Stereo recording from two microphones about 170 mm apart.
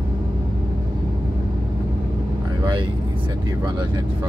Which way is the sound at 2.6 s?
25° right (ahead or behind).